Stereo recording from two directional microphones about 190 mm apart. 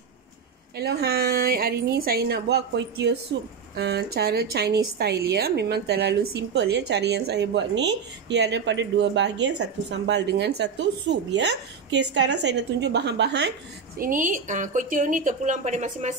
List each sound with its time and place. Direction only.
0.7 s a woman's voice: 60° right (ahead or behind)
13.9 s a woman's voice: 45° right (ahead or behind)